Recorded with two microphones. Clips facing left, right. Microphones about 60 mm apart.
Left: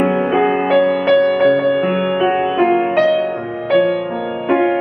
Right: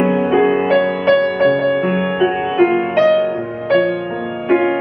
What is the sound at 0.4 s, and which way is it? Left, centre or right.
Music, centre.